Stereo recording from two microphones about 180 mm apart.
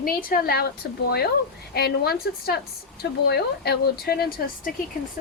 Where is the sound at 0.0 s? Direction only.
55° left (ahead or behind).